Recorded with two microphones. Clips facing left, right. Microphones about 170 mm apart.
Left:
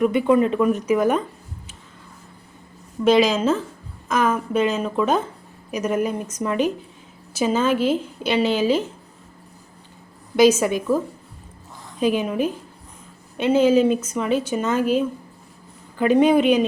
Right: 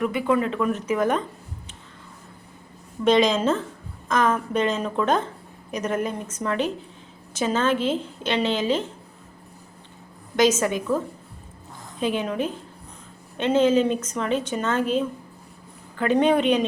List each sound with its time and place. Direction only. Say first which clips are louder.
0.0 s a woman's voice: left 5 dB; 20° left (ahead or behind)
3.0 s a woman's voice: left 2 dB; 5° left (ahead or behind)
10.3 s a woman's voice: left 4 dB; 10° left (ahead or behind)